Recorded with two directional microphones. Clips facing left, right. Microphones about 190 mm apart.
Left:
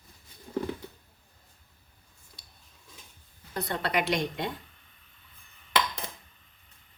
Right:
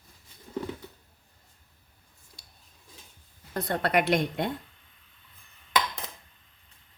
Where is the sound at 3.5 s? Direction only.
50° right (ahead or behind).